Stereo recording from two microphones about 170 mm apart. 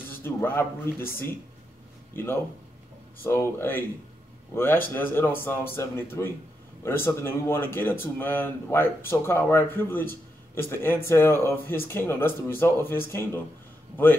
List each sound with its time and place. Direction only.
0.1 s speech: 10° left (ahead or behind)
1.0 s speech: 60° left (ahead or behind)
2.1 s speech: 15° left (ahead or behind)